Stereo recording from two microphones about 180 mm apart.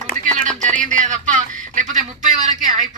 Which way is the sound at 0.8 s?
45° right (ahead or behind).